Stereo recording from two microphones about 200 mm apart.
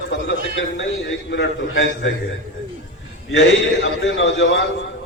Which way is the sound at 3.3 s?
70° left (ahead or behind).